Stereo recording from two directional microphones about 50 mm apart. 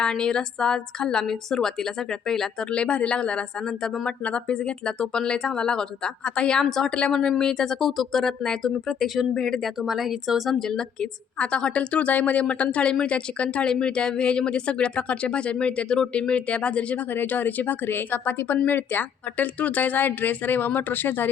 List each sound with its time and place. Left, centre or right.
0.0 s a woman's voice: centre
2.7 s a woman's voice: left
9.8 s speech: centre
10.6 s speech: centre
17.2 s speech: left